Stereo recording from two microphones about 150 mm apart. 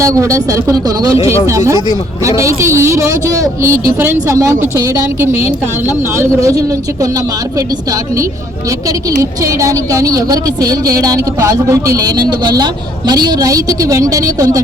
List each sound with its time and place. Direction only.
0.0 s a woman's voice: 20° right (ahead or behind)
9.0 s a woman's voice: 20° right (ahead or behind)